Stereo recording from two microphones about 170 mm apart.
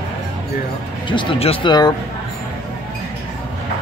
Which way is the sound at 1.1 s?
30° left (ahead or behind).